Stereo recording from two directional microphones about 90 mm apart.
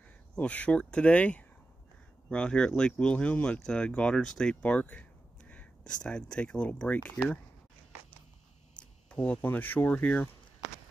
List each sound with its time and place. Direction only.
0.4 s speech: 15° left (ahead or behind)
9.1 s speech: 15° left (ahead or behind)